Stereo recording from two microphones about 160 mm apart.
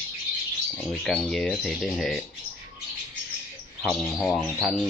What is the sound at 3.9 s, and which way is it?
Speech, 5° left (ahead or behind).